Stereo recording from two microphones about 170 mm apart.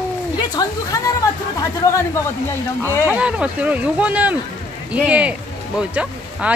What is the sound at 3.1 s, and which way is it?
Speech, 5° right (ahead or behind).